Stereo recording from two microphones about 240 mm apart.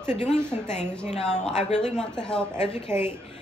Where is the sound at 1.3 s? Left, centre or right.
Left.